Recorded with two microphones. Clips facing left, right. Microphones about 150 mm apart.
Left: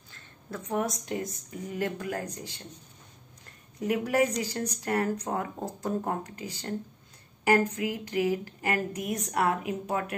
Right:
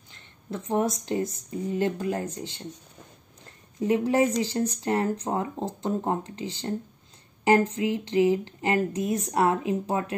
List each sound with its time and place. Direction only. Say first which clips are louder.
0.1 s speech: right 4 dB; 25° right (ahead or behind)
3.8 s speech: right 4 dB; 25° right (ahead or behind)